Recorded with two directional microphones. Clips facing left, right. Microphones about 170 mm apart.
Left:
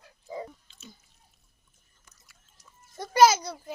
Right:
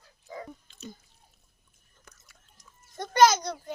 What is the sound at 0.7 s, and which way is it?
Drip, 50° right (ahead or behind).